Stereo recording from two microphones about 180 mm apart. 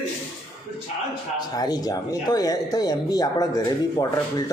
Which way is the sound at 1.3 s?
20° left (ahead or behind).